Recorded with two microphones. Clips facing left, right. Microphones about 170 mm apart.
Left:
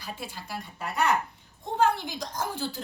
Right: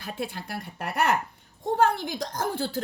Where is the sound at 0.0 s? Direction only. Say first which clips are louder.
Right 6 dB; 55° right (ahead or behind).